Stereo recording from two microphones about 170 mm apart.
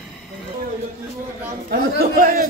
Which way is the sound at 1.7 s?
55° right (ahead or behind).